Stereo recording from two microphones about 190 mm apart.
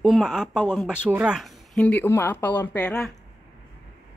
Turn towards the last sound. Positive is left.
turn(degrees=5)  # may be behind; listen again after turning